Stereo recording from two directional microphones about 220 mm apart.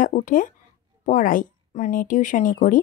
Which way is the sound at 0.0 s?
35° left (ahead or behind).